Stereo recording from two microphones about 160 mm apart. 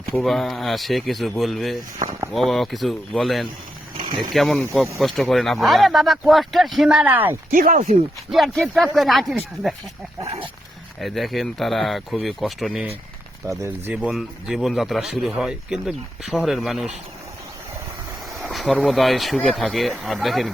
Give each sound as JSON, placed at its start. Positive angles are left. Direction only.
{"t": 0.1, "sound": "speech", "side_deg": 0}
{"t": 7.5, "sound": "speech", "side_deg": -55}
{"t": 8.3, "sound": "speech", "side_deg": 0}
{"t": 11.0, "sound": "speech", "side_deg": 0}
{"t": 13.4, "sound": "speech", "side_deg": -15}
{"t": 18.3, "sound": "speech", "side_deg": 0}